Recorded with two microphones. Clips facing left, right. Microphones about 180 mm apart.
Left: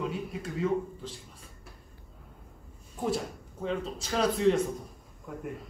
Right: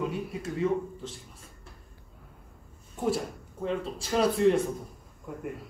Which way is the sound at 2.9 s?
Centre (ahead or behind).